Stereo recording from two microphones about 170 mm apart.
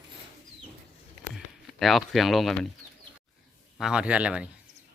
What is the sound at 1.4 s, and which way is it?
Speech, centre (ahead or behind).